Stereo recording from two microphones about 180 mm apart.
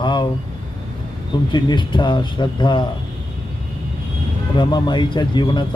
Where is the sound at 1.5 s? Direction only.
25° left (ahead or behind).